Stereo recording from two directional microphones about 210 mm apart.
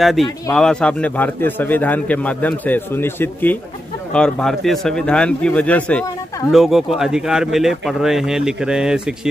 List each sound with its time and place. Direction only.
0.0 s a man's voice: centre (ahead or behind)